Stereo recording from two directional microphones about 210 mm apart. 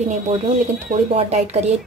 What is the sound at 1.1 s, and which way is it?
Speech, 30° right (ahead or behind).